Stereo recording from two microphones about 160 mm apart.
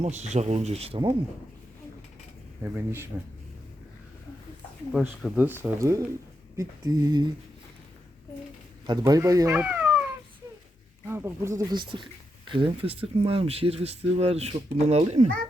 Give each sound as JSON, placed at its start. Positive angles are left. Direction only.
{"t": 0.0, "sound": "speech", "side_deg": -45}
{"t": 2.7, "sound": "speech", "side_deg": -15}
{"t": 4.9, "sound": "speech", "side_deg": 0}
{"t": 8.9, "sound": "speech", "side_deg": -25}
{"t": 9.5, "sound": "cat", "side_deg": -10}
{"t": 11.0, "sound": "speech", "side_deg": -15}
{"t": 11.7, "sound": "speech", "side_deg": -30}